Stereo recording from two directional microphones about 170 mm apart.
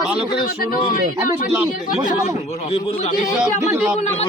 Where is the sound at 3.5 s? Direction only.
15° right (ahead or behind).